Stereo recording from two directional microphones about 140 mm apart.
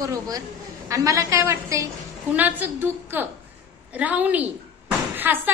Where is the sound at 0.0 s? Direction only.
25° right (ahead or behind).